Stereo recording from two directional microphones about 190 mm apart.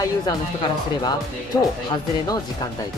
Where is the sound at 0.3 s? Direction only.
20° left (ahead or behind).